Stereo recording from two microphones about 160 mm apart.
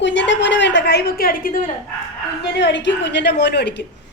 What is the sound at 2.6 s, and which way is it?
A woman's voice, 90° left.